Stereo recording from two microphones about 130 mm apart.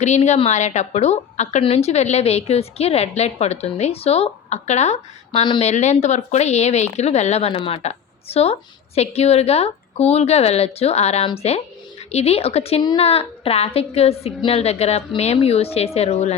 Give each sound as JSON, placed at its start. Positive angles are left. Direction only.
{"t": 0.0, "sound": "a woman's voice", "side_deg": 60}